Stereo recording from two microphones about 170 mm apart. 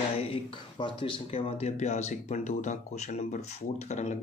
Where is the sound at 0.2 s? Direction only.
30° left (ahead or behind).